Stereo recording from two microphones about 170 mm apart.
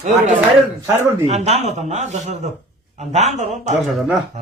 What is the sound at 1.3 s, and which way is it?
Speech, 40° right (ahead or behind).